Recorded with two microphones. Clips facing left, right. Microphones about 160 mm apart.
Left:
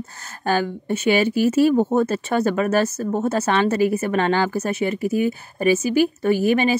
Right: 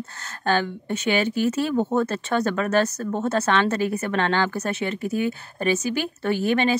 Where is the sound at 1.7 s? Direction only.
20° left (ahead or behind).